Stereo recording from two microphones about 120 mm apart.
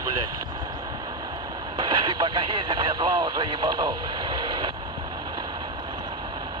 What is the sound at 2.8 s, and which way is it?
Speech, 35° right (ahead or behind).